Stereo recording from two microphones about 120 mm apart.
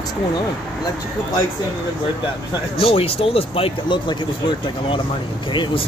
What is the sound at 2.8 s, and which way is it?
Speech, 50° left (ahead or behind).